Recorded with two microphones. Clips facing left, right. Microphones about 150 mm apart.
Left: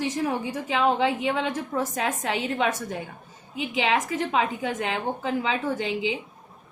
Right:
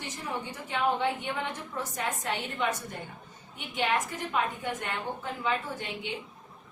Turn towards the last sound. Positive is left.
turn(degrees=90)